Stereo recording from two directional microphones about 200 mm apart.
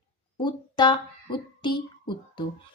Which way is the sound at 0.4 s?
20° left (ahead or behind).